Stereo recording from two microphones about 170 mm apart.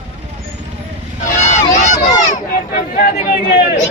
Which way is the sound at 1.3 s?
45° left (ahead or behind).